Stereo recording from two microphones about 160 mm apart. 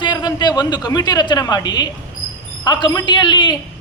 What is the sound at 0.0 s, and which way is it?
A woman's voice, 25° left (ahead or behind).